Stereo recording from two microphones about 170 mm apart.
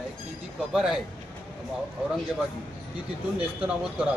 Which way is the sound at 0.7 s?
Centre (ahead or behind).